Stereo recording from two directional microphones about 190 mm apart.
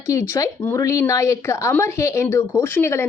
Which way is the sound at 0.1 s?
15° left (ahead or behind).